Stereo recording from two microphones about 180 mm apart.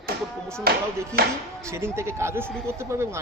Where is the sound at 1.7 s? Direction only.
15° right (ahead or behind).